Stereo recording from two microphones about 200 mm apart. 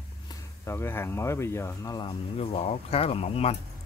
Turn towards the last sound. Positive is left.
turn(degrees=30)  # may be behind; listen again after turning